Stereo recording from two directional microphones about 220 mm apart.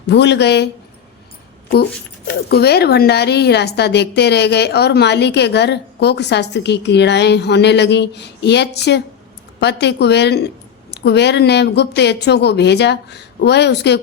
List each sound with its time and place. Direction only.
0.1 s a woman's voice: 50° left (ahead or behind)
2.5 s a woman's voice: 45° left (ahead or behind)